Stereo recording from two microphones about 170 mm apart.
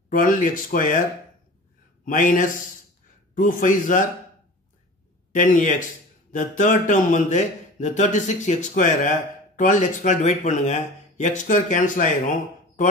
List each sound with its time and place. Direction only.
0.1 s a man's voice: 50° left (ahead or behind)
2.0 s a man's voice: 50° left (ahead or behind)
5.3 s a man's voice: 50° left (ahead or behind)